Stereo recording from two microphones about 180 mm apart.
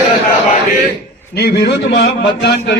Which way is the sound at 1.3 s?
60° left (ahead or behind).